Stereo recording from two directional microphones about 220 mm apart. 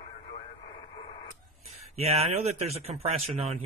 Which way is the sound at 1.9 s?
30° right (ahead or behind).